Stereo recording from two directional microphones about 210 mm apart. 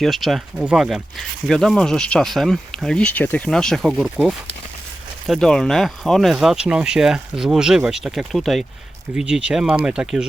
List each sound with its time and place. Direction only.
0.0 s speech: centre (ahead or behind)